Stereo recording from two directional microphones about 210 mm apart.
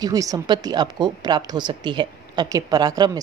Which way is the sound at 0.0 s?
15° right (ahead or behind).